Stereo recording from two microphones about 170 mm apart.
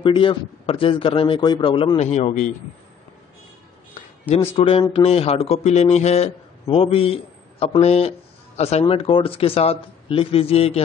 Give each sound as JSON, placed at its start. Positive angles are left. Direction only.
{"t": 0.0, "sound": "a man's voice", "side_deg": 30}
{"t": 4.6, "sound": "a man's voice", "side_deg": 30}